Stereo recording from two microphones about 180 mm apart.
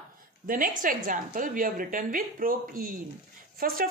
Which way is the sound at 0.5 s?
50° right (ahead or behind).